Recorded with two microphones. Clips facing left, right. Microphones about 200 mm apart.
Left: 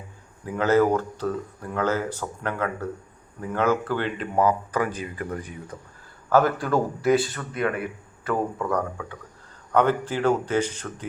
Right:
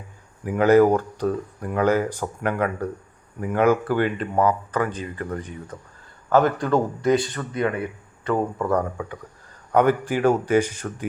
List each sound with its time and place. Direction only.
0.4 s speech: 15° right (ahead or behind)
4.2 s speech: 10° left (ahead or behind)
7.5 s speech: 25° right (ahead or behind)
8.5 s speech: 5° right (ahead or behind)